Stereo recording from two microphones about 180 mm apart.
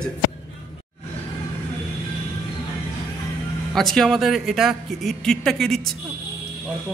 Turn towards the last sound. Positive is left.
turn(degrees=0)  # may be behind; listen again after turning